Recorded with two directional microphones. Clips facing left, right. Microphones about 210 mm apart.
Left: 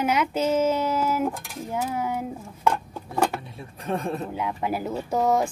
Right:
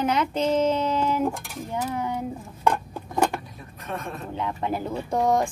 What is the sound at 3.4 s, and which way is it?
Speech, 30° left (ahead or behind).